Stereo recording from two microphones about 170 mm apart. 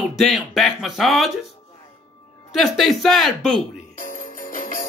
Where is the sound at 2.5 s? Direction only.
Centre (ahead or behind).